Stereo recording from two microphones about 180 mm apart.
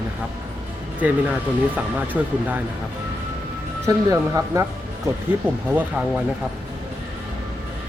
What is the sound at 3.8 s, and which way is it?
Speech, 15° right (ahead or behind).